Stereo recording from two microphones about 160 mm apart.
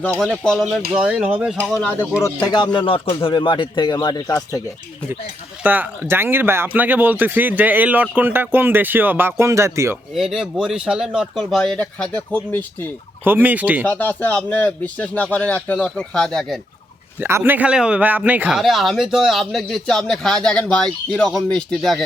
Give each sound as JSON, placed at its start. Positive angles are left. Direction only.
{"t": 0.0, "sound": "a man's voice", "side_deg": 5}
{"t": 1.7, "sound": "speech", "side_deg": 10}
{"t": 2.2, "sound": "speech", "side_deg": 25}
{"t": 5.6, "sound": "speech", "side_deg": -10}
{"t": 10.2, "sound": "a man's voice", "side_deg": -5}
{"t": 13.2, "sound": "speech", "side_deg": -10}
{"t": 13.8, "sound": "speech", "side_deg": 10}
{"t": 17.2, "sound": "a man's voice", "side_deg": -15}